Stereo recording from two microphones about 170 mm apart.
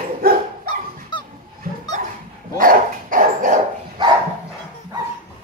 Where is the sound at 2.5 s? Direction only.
55° right (ahead or behind).